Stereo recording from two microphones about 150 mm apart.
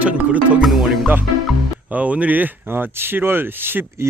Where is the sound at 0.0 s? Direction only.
10° right (ahead or behind).